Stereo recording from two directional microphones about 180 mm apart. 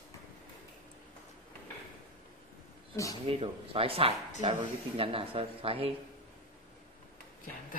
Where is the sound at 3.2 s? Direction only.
30° right (ahead or behind).